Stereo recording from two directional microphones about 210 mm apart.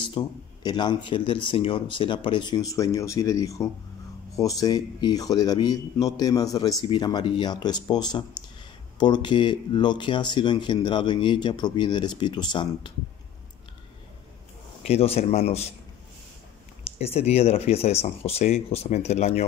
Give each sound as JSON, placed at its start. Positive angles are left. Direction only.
{"t": 0.2, "sound": "a man's voice", "side_deg": 20}
{"t": 14.9, "sound": "a man's voice", "side_deg": 30}
{"t": 16.8, "sound": "a man's voice", "side_deg": 30}